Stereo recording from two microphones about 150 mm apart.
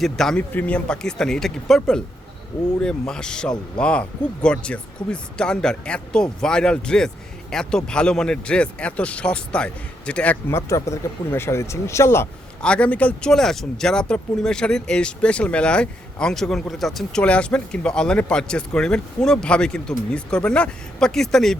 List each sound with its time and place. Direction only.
0.0 s speech: 5° left (ahead or behind)
10.7 s speech: 20° left (ahead or behind); by 21.6 s centre (ahead or behind)